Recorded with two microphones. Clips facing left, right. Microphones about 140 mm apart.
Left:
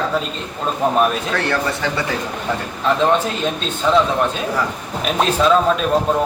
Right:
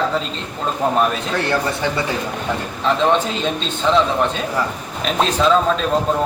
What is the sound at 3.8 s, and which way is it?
Speech, centre (ahead or behind).